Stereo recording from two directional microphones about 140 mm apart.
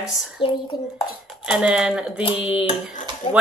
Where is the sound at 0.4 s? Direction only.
35° left (ahead or behind).